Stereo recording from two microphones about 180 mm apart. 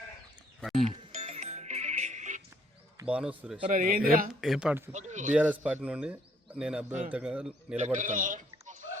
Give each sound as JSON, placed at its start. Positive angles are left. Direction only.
{"t": 0.6, "sound": "music", "side_deg": 0}
{"t": 1.1, "sound": "music", "side_deg": -35}
{"t": 3.1, "sound": "speech", "side_deg": -5}
{"t": 3.7, "sound": "speech", "side_deg": -50}
{"t": 4.4, "sound": "a man's voice", "side_deg": 0}
{"t": 4.9, "sound": "speech", "side_deg": -40}
{"t": 5.3, "sound": "a man's voice", "side_deg": -10}
{"t": 7.9, "sound": "a sound", "side_deg": -45}